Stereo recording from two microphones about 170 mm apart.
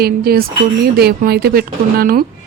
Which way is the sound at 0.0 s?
65° right (ahead or behind).